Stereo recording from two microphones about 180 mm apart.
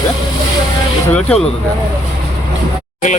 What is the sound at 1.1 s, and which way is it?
Speech, 5° left (ahead or behind).